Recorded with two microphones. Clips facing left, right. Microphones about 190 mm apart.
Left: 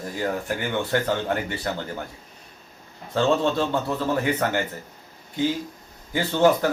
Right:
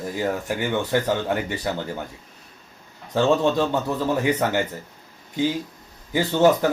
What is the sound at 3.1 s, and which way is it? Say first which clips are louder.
Speech: right 2 dB; 15° right (ahead or behind).